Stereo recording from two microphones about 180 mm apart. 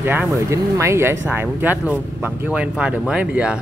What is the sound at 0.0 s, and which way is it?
Speech, 10° right (ahead or behind).